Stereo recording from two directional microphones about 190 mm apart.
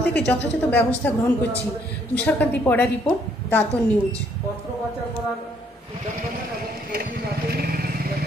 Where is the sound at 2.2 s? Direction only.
10° left (ahead or behind).